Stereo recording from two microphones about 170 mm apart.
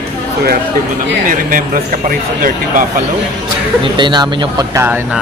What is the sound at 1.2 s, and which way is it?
Speech, 55° right (ahead or behind).